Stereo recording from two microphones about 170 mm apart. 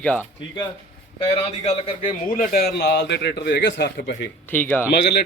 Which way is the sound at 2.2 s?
55° left (ahead or behind).